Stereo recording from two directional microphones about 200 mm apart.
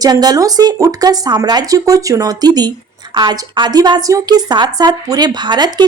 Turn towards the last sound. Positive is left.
turn(degrees=-20)  # may be behind; listen again after turning